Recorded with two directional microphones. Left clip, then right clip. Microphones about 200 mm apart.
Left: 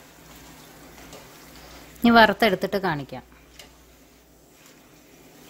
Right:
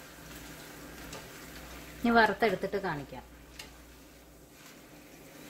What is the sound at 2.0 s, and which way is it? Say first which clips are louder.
A woman's voice: left 9 dB; 60° left (ahead or behind).